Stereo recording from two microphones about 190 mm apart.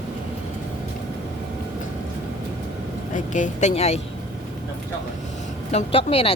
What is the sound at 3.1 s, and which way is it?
Speech, 40° left (ahead or behind).